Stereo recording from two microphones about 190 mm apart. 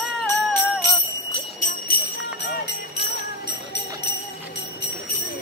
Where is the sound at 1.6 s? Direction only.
50° left (ahead or behind).